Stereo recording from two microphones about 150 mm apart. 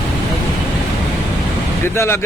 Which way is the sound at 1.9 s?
20° left (ahead or behind).